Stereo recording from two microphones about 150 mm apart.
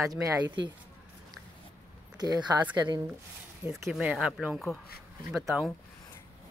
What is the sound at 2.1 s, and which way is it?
Speech, 25° right (ahead or behind).